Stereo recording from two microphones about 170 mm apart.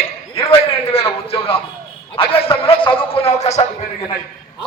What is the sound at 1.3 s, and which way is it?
A man's voice, 35° left (ahead or behind).